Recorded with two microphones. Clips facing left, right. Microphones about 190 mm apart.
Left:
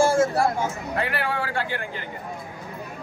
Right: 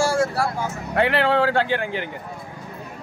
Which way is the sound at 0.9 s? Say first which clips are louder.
Right 11 dB; 70° right (ahead or behind).